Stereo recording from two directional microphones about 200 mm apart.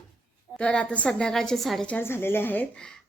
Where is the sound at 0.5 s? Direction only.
5° left (ahead or behind).